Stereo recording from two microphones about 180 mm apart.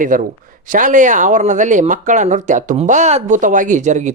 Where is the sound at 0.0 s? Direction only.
50° right (ahead or behind).